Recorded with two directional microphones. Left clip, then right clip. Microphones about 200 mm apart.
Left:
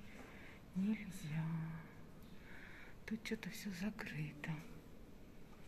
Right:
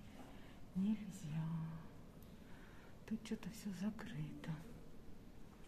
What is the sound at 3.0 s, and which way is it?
Speech, 15° right (ahead or behind).